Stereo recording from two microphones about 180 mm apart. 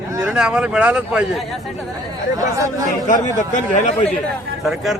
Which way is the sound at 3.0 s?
45° left (ahead or behind).